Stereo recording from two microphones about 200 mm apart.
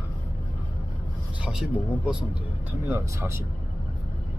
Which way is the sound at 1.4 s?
5° right (ahead or behind).